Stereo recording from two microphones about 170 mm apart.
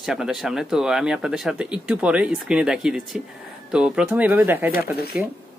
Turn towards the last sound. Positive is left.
turn(degrees=65)  # may be behind; listen again after turning